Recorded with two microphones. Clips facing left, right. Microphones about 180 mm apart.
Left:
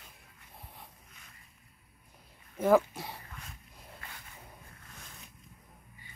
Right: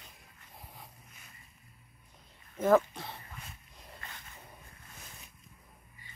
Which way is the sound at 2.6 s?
10° left (ahead or behind).